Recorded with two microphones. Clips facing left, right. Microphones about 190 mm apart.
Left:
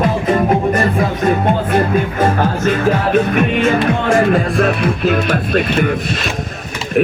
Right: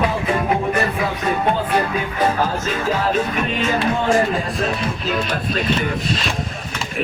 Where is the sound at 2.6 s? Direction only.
60° left (ahead or behind).